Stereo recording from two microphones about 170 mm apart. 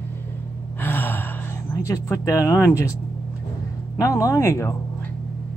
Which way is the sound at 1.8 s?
15° left (ahead or behind).